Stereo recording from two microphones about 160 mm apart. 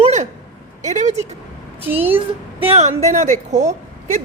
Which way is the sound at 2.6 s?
40° right (ahead or behind).